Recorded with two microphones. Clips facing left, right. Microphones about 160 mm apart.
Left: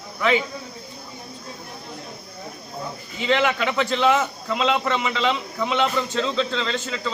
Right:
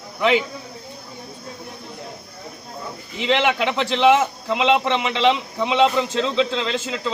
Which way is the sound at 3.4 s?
25° right (ahead or behind).